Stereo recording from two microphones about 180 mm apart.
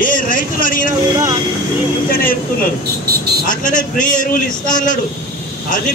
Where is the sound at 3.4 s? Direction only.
45° left (ahead or behind).